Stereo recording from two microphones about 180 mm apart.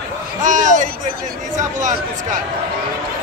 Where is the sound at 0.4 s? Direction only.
45° right (ahead or behind).